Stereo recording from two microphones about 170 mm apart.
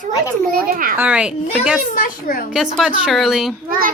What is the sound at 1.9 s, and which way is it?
Speech, 55° left (ahead or behind).